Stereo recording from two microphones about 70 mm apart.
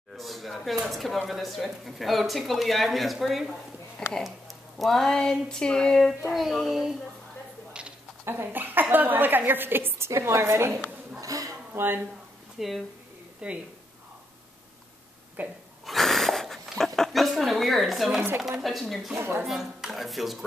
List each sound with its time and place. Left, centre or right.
0.2 s speech: centre
7.8 s a sound: centre
8.3 s a woman's voice: right
11.1 s a sound: right
11.7 s speech: right
12.5 s speech: centre
13.4 s speech: centre
15.4 s speech: right
15.8 s a sound: centre
18.6 s speech: centre
19.1 s a woman's voice: right
19.4 s speech: centre